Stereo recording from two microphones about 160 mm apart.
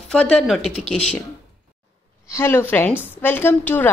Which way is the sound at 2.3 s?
15° left (ahead or behind).